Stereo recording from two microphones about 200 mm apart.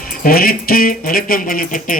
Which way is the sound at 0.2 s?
50° left (ahead or behind).